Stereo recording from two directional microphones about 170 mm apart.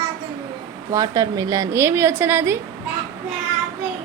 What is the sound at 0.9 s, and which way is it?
A woman's voice, 20° right (ahead or behind).